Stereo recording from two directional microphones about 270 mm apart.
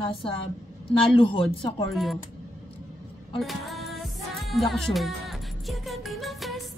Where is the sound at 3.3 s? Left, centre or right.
Centre.